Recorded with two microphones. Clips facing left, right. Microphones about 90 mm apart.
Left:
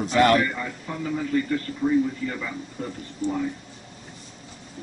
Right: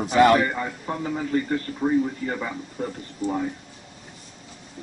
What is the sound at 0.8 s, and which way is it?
Speech, 35° right (ahead or behind).